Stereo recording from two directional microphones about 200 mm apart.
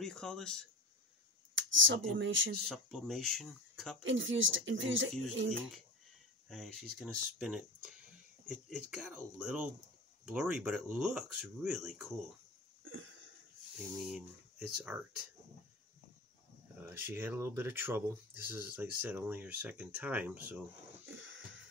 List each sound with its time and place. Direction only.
0.0 s speech: centre (ahead or behind)
1.5 s a sound: 70° right (ahead or behind)
2.1 s speech: 70° right (ahead or behind)
2.6 s speech: centre (ahead or behind)
4.0 s speech: 70° right (ahead or behind)
6.5 s speech: centre (ahead or behind)
13.7 s speech: centre (ahead or behind)
16.9 s speech: 10° right (ahead or behind)
21.0 s a sound: 80° right